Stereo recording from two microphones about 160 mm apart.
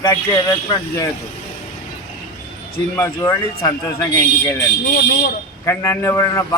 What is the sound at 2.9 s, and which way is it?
Speech, 15° left (ahead or behind).